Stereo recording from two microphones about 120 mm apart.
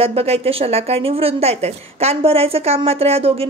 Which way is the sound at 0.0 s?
55° right (ahead or behind).